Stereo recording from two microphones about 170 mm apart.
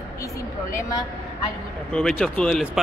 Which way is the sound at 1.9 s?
5° left (ahead or behind).